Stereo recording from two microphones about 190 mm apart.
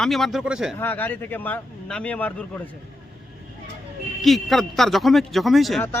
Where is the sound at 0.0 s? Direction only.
Centre (ahead or behind).